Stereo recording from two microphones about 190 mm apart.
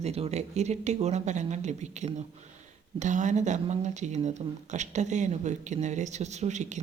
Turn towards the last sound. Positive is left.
turn(degrees=-40)  # may be behind; listen again after turning